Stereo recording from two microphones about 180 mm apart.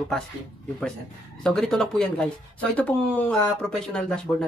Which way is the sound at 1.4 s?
5° left (ahead or behind).